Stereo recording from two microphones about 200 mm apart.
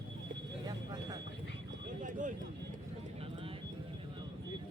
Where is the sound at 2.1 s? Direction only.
40° right (ahead or behind).